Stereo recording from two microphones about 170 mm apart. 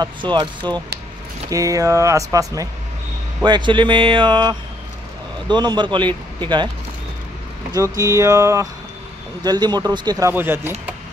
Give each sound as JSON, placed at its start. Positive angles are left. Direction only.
{"t": 0.0, "sound": "speech", "side_deg": -25}
{"t": 7.7, "sound": "speech", "side_deg": -20}